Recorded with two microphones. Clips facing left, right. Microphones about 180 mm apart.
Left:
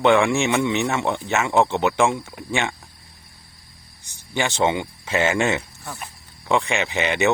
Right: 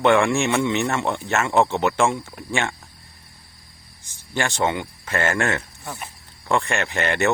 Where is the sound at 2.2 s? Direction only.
15° left (ahead or behind).